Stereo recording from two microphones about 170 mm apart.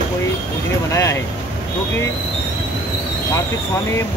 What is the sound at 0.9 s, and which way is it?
Speech, 20° left (ahead or behind).